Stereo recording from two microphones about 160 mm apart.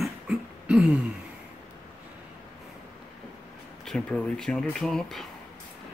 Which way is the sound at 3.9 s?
5° left (ahead or behind).